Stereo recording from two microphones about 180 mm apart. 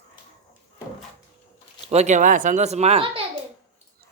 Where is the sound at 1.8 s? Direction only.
40° right (ahead or behind).